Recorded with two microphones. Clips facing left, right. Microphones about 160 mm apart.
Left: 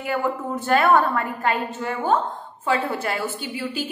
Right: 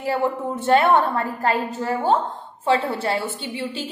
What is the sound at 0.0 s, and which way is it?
A woman's voice, 30° right (ahead or behind).